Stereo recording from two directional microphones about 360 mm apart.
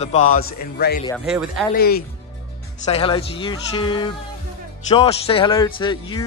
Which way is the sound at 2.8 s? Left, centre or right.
Centre.